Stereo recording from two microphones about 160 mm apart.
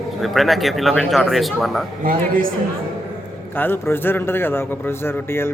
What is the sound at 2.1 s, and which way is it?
Speech, 60° right (ahead or behind).